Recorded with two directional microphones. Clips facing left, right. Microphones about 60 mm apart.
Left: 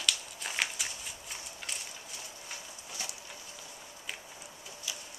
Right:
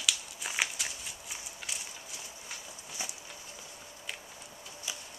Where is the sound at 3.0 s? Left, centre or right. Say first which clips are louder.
Right 1 dB; centre.